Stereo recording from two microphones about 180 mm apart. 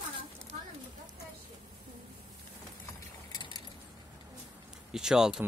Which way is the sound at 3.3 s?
25° left (ahead or behind).